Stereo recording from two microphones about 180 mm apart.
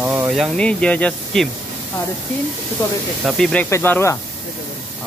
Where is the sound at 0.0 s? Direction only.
10° right (ahead or behind).